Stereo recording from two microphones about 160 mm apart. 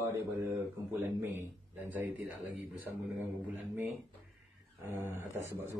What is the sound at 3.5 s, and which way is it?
Speech, 15° right (ahead or behind).